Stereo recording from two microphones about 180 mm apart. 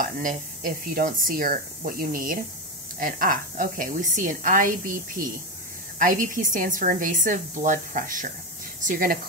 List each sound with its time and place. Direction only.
0.0 s a woman's voice: 50° right (ahead or behind)